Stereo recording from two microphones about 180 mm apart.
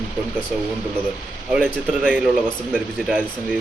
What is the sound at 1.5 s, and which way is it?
Speech, 5° right (ahead or behind).